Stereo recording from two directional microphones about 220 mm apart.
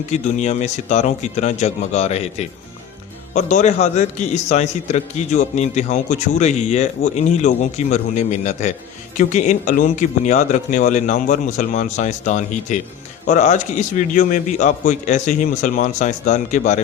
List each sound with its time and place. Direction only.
0.1 s a man's voice: 30° left (ahead or behind)